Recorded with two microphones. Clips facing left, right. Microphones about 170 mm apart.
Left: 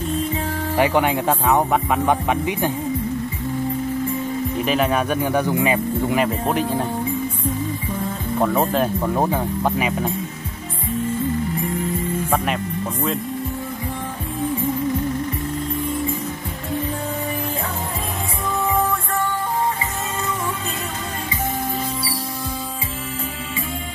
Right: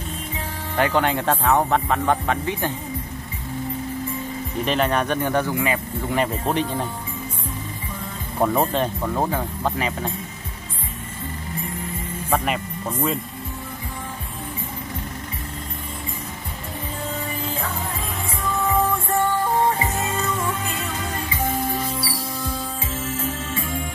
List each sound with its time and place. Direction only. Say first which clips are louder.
0.7 s speech: left 2 dB; 10° left (ahead or behind)
4.6 s speech: even; 5° left (ahead or behind)
5.5 s speech: left 4 dB; 20° left (ahead or behind)
6.1 s speech: right 1 dB; 5° left (ahead or behind)
8.4 s speech: left 1 dB; centre (ahead or behind)
9.1 s speech: left 3 dB; 15° left (ahead or behind)